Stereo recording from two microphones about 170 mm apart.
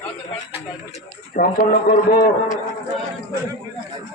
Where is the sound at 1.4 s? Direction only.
55° left (ahead or behind).